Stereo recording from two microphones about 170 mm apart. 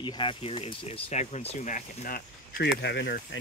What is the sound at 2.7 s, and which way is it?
Speech, 90° left.